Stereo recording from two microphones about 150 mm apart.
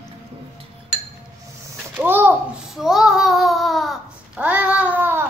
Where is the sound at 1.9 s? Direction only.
10° right (ahead or behind).